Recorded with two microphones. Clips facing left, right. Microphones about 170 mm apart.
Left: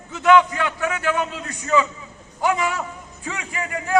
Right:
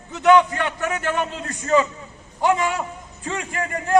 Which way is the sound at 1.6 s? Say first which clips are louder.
Right 2 dB; 45° right (ahead or behind).